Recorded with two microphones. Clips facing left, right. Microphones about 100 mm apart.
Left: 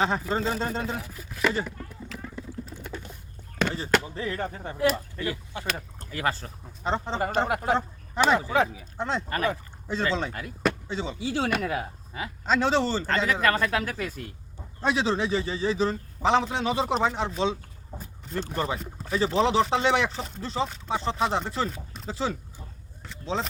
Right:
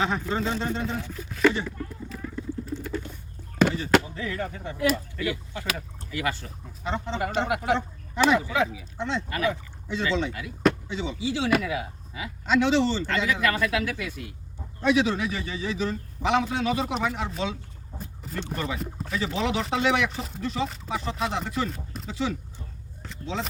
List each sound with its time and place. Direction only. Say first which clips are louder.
0.0 s speech: left 1 dB; 35° left (ahead or behind)
0.9 s chopping: right 3 dB; 5° left (ahead or behind)
2.1 s a sound: right 5 dB; 20° left (ahead or behind)
4.1 s speech: left 1 dB; 35° left (ahead or behind)
18.3 s speech: left 2 dB; 30° left (ahead or behind)
18.8 s speech: right 5 dB; centre (ahead or behind)
19.1 s speech: left 5 dB; 35° left (ahead or behind)
20.1 s chopping: even; centre (ahead or behind)
20.4 s speech: even; 30° left (ahead or behind)